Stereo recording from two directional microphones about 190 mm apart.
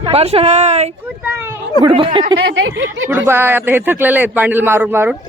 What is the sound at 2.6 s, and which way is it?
Speech, 85° right.